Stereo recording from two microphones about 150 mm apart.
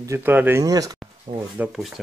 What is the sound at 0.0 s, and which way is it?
Speech, 15° right (ahead or behind).